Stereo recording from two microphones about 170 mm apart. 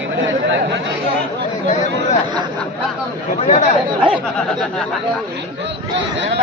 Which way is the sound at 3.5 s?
45° left (ahead or behind).